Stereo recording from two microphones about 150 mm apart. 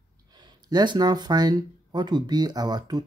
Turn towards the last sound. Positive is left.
turn(degrees=-30)  # may be behind; listen again after turning